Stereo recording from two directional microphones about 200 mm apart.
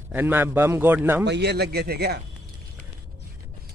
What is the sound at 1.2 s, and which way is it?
Speech, 55° right (ahead or behind).